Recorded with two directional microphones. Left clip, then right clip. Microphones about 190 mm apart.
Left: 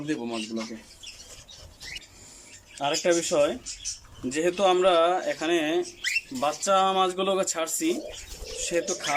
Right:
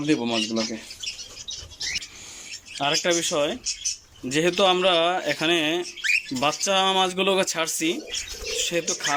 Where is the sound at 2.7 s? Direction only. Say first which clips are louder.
Right 2 dB; 10° left (ahead or behind).